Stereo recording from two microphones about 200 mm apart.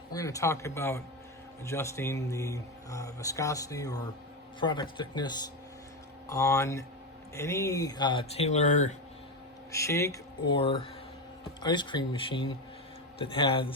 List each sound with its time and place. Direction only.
0.1 s speech: 15° left (ahead or behind); by 9.0 s 35° left (ahead or behind)
9.7 s speech: 15° left (ahead or behind)
10.5 s speech: 30° left (ahead or behind)